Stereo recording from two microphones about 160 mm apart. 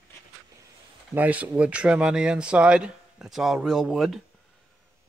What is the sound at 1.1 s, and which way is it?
Speech, 10° right (ahead or behind).